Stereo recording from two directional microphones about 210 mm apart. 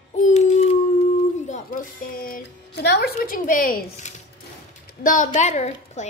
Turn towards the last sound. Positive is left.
turn(degrees=35)  # may be behind; listen again after turning